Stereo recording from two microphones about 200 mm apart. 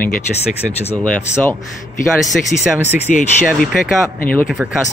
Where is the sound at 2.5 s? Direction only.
45° left (ahead or behind).